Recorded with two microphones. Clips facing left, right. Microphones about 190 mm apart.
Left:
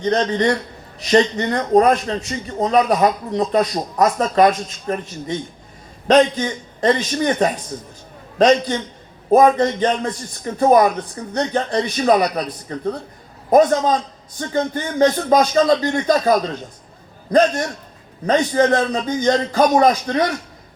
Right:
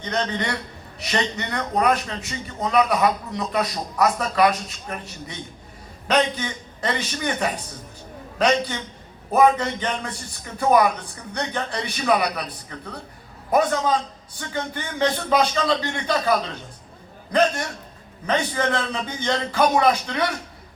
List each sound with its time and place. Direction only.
0.0 s a man's voice: 40° left (ahead or behind)
3.3 s a man's voice: 30° left (ahead or behind)
4.0 s a man's voice: 40° left (ahead or behind)